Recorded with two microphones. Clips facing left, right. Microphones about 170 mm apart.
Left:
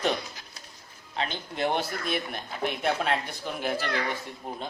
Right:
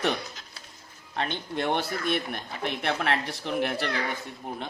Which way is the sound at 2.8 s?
75° right (ahead or behind).